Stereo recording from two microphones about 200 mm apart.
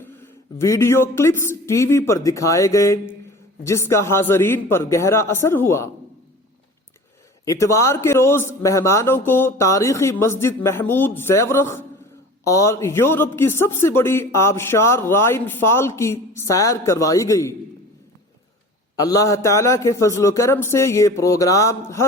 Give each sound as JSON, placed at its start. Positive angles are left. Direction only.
{"t": 0.0, "sound": "speech", "side_deg": 15}
{"t": 7.4, "sound": "speech", "side_deg": 15}
{"t": 18.9, "sound": "speech", "side_deg": 20}